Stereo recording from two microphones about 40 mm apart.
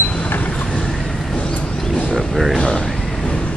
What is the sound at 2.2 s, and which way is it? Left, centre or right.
Speech, centre.